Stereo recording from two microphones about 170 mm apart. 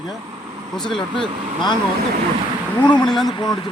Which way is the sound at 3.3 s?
25° left (ahead or behind).